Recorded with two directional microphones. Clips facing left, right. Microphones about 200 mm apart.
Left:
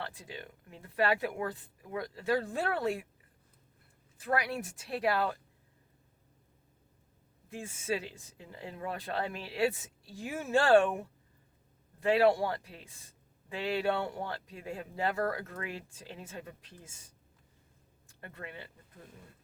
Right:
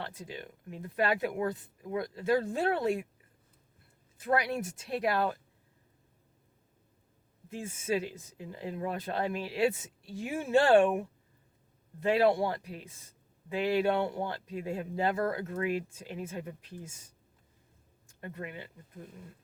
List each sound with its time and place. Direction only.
0.0 s a woman's voice: 20° right (ahead or behind)
4.2 s a woman's voice: 25° right (ahead or behind)
7.5 s a woman's voice: 25° right (ahead or behind)
12.0 s a woman's voice: 20° right (ahead or behind)
18.2 s a woman's voice: 20° right (ahead or behind)